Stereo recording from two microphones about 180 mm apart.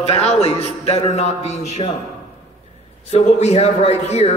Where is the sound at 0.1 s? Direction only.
35° left (ahead or behind).